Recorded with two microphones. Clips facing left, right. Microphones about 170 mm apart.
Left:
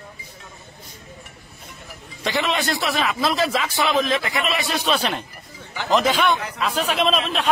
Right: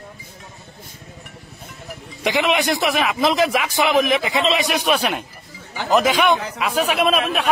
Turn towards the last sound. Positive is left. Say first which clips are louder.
# right 2 dB
turn(degrees=-10)  # may be behind; listen again after turning